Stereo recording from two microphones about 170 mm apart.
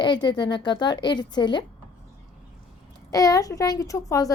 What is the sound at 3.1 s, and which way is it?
Speech, 20° left (ahead or behind).